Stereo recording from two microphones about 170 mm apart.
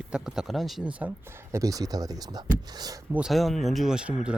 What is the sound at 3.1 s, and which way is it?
Speech, centre (ahead or behind).